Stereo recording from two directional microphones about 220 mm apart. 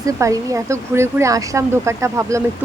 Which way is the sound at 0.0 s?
15° right (ahead or behind).